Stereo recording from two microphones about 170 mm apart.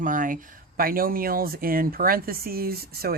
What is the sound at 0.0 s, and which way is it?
Speech, 50° right (ahead or behind).